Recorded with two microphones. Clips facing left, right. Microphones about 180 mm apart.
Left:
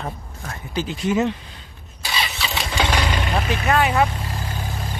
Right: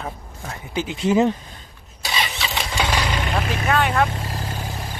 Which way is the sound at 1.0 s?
30° right (ahead or behind).